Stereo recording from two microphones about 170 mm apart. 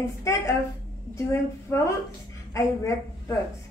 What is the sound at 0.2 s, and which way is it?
A woman's voice, 15° left (ahead or behind).